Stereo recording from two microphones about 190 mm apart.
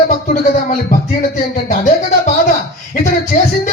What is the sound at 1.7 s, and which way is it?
Music, 45° left (ahead or behind).